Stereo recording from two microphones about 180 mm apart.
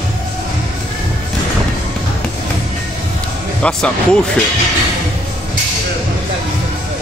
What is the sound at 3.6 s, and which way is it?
Speech, 5° left (ahead or behind).